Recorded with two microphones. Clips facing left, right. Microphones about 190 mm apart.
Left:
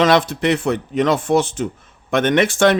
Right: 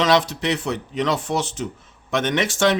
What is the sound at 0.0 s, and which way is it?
Speech, 50° left (ahead or behind).